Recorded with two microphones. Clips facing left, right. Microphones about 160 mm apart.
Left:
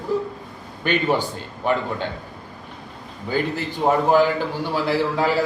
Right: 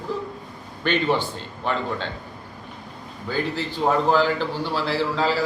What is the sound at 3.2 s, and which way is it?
A man's voice, 15° left (ahead or behind).